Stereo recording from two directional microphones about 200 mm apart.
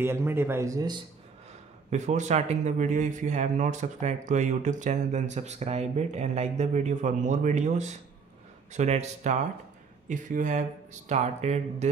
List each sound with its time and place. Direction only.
0.0 s speech: 10° right (ahead or behind)
1.9 s speech: 35° right (ahead or behind)